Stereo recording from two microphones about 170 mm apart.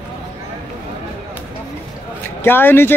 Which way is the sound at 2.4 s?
10° left (ahead or behind).